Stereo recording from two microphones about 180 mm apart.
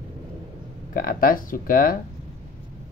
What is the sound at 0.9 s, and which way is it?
Speech, 50° left (ahead or behind).